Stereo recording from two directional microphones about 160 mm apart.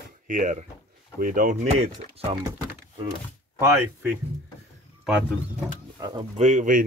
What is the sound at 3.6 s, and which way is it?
Speech, 10° right (ahead or behind).